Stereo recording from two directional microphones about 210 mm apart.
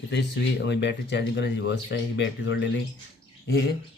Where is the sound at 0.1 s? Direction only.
55° left (ahead or behind).